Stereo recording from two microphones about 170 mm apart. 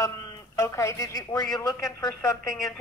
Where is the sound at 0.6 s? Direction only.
15° left (ahead or behind).